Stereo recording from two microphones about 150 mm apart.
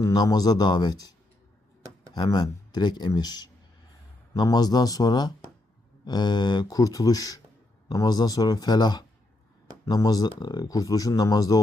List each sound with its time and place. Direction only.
0.0 s speech: 25° left (ahead or behind)
2.1 s speech: 30° left (ahead or behind)